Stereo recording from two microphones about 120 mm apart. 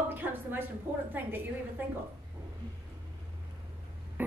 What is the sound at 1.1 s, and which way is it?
Speech, 15° right (ahead or behind).